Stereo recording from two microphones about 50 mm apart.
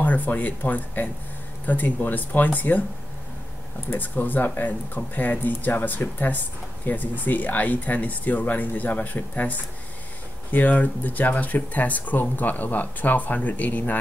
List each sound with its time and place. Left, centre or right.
0.0 s speech: left
3.9 s speech: left